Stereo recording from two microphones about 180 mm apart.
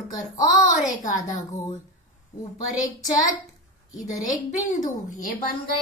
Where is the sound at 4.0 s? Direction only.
20° left (ahead or behind).